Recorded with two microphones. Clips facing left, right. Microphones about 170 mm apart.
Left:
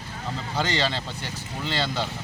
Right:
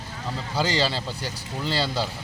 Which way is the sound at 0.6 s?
35° right (ahead or behind).